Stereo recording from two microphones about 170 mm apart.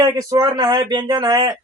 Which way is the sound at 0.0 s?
20° right (ahead or behind).